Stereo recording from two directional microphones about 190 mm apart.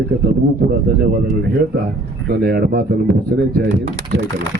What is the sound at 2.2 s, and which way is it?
Speech, 55° right (ahead or behind).